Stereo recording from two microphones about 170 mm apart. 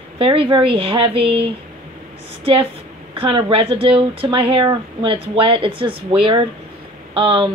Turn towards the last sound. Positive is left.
turn(degrees=-30)  # may be behind; listen again after turning